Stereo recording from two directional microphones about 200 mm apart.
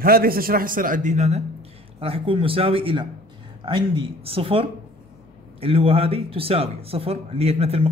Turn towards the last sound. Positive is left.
turn(degrees=-30)  # may be behind; listen again after turning